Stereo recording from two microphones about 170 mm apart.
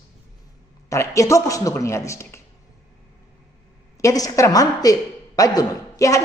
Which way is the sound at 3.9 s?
20° left (ahead or behind).